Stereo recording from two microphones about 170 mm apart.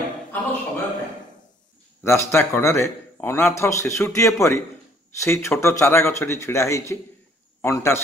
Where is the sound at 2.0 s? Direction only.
15° left (ahead or behind).